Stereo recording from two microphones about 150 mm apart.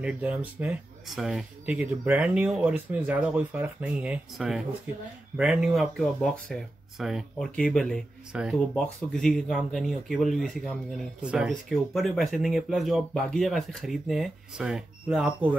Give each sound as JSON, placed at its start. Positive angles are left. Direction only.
{"t": 0.0, "sound": "speech", "side_deg": -10}